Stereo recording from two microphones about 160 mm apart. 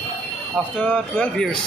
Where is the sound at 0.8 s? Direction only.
10° left (ahead or behind).